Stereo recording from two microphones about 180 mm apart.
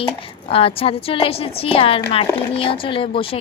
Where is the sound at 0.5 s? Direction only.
30° left (ahead or behind).